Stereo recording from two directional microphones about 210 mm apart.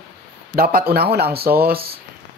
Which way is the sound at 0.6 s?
45° right (ahead or behind).